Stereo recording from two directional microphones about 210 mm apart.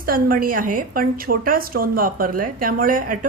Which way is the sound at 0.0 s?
45° right (ahead or behind).